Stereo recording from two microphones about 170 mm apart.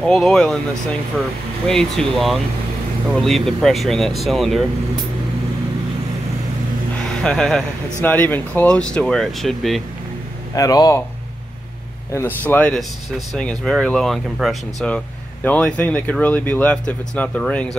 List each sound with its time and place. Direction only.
0.0 s speech: 5° left (ahead or behind)
1.7 s speech: 5° left (ahead or behind)
7.2 s speech: 5° left (ahead or behind)
10.5 s speech: 20° left (ahead or behind)
12.1 s speech: 15° left (ahead or behind)